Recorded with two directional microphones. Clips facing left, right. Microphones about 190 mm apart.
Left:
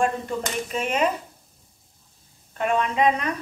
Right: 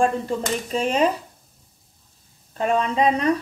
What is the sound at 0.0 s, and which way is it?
A woman's voice, 30° right (ahead or behind).